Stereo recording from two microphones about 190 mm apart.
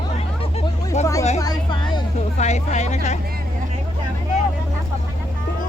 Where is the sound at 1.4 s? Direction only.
20° left (ahead or behind).